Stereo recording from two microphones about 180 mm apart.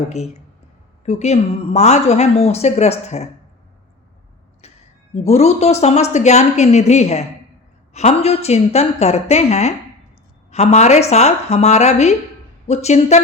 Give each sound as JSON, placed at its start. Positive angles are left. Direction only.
{"t": 0.1, "sound": "a woman's voice", "side_deg": 40}
{"t": 4.6, "sound": "a sound", "side_deg": 35}
{"t": 5.1, "sound": "a woman's voice", "side_deg": 35}